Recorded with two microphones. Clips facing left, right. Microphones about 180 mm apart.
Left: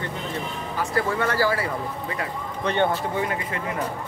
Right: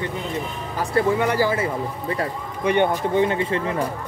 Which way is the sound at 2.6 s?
15° right (ahead or behind).